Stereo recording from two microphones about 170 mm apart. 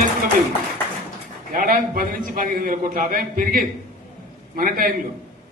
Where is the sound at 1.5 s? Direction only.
55° right (ahead or behind).